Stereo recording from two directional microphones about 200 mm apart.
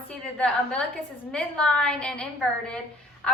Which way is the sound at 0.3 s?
5° left (ahead or behind).